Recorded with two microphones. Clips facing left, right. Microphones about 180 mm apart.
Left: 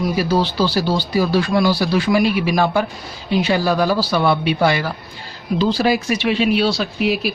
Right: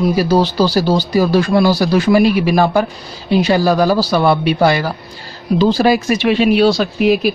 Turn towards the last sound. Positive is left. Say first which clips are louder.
# right 6 dB
turn(degrees=-50)  # may be behind; listen again after turning